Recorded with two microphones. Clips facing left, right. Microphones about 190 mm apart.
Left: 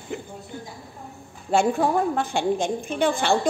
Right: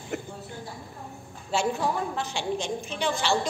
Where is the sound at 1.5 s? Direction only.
55° left (ahead or behind).